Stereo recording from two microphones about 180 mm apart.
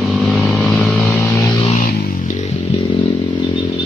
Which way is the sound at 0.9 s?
15° left (ahead or behind).